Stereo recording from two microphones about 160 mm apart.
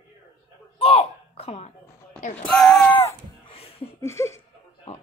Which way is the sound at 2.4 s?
5° left (ahead or behind).